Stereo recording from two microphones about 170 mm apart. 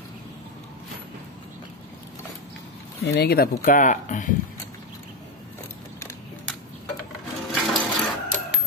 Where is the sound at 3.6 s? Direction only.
50° left (ahead or behind).